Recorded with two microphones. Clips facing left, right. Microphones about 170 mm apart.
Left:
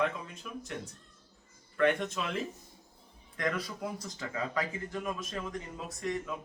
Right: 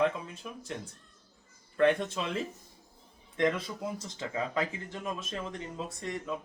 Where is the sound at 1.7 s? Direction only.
30° right (ahead or behind).